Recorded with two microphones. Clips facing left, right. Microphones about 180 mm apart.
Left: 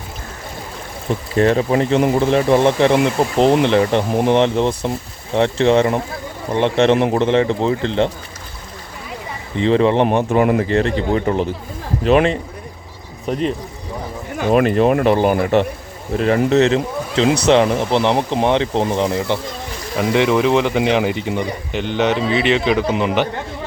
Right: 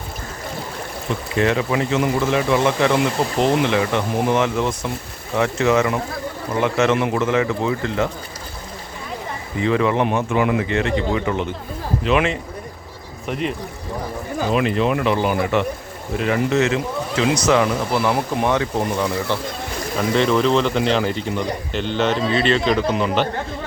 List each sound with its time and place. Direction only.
1.4 s speech: 35° left (ahead or behind)
9.6 s speech: 30° left (ahead or behind)
14.3 s speech: 50° left (ahead or behind); by 23.3 s 15° left (ahead or behind)